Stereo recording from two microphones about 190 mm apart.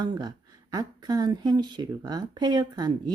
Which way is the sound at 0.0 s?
20° right (ahead or behind).